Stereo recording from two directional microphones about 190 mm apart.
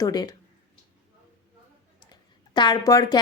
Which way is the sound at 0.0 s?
20° left (ahead or behind).